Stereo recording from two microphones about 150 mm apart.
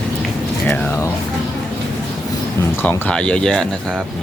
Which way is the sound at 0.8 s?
15° left (ahead or behind).